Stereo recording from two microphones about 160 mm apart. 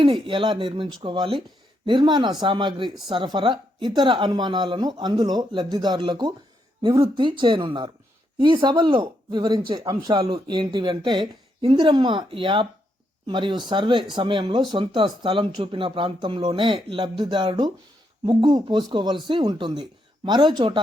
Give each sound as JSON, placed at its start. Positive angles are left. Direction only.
{"t": 0.0, "sound": "a woman's voice", "side_deg": -35}